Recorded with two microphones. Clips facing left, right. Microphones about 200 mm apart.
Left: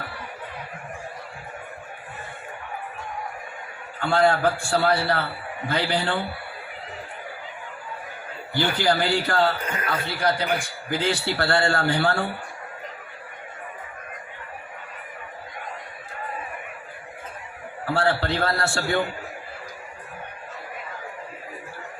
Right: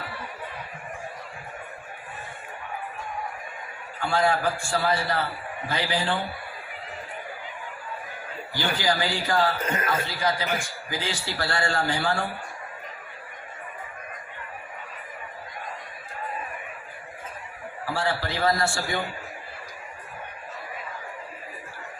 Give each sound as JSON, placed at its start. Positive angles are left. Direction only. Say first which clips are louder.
{"t": 4.0, "sound": "a man's voice", "louder": "left 4 dB", "side_deg": 60}
{"t": 8.5, "sound": "a man's voice", "louder": "left 4 dB", "side_deg": 60}
{"t": 9.6, "sound": "a sound", "louder": "right 2 dB", "side_deg": -25}
{"t": 10.1, "sound": "a man's voice", "louder": "left 3 dB", "side_deg": 65}
{"t": 17.8, "sound": "a man's voice", "louder": "left 5 dB", "side_deg": 60}